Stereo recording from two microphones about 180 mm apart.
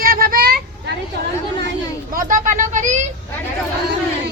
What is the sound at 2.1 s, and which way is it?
Speech, 50° right (ahead or behind).